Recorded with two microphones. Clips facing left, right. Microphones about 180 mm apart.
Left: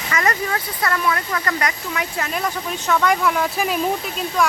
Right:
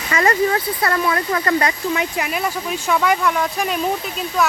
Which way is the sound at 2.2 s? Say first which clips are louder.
Right 2 dB; 10° right (ahead or behind).